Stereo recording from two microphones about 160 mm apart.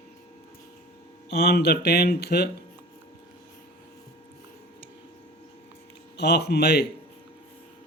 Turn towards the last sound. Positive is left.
turn(degrees=90)